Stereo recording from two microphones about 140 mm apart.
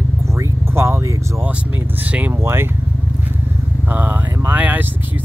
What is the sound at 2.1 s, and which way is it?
Speech, 15° right (ahead or behind).